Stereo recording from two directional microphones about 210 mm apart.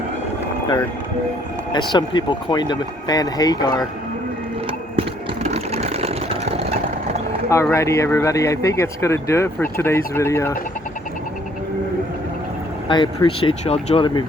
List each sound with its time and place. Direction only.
1.9 s speech: 20° left (ahead or behind)
4.6 s sewing machine: 30° right (ahead or behind)
7.5 s speech: 15° left (ahead or behind)
12.9 s speech: 25° left (ahead or behind)